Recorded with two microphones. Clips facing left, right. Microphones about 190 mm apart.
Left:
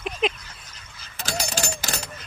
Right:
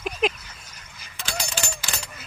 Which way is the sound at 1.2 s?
40° left (ahead or behind).